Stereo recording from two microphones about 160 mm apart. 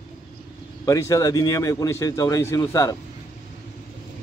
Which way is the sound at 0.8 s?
20° left (ahead or behind).